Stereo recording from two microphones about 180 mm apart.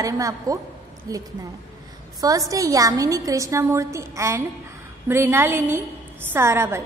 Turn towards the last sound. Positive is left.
turn(degrees=-15)  # may be behind; listen again after turning